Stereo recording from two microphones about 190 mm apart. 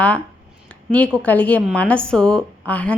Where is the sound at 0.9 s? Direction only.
5° left (ahead or behind).